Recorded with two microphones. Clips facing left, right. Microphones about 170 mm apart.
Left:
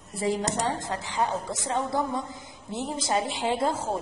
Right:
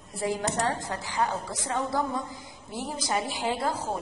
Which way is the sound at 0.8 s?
20° left (ahead or behind).